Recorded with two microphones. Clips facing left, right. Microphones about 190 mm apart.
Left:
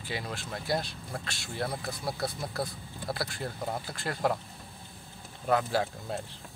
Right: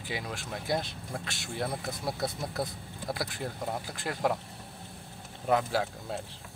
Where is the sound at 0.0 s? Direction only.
15° right (ahead or behind).